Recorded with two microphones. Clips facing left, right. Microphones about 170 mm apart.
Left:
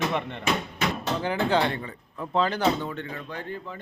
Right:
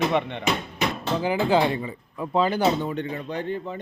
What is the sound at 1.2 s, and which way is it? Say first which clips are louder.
A man's voice: right 3 dB; 10° right (ahead or behind).